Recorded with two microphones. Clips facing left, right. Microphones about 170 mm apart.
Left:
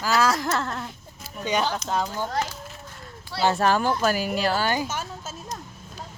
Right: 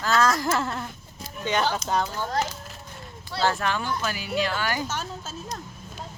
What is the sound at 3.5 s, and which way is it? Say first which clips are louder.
Speech: left 6 dB; 40° left (ahead or behind).